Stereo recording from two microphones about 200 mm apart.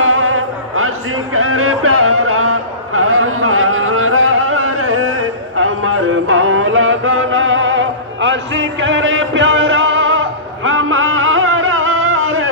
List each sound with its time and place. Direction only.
0.0 s music: 90° right